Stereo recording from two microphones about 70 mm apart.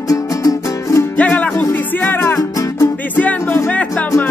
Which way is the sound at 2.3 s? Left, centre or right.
Left.